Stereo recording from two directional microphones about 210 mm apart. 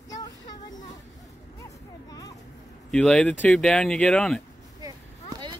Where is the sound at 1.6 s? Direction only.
15° left (ahead or behind).